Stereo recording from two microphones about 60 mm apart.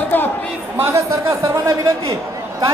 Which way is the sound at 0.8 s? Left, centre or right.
Right.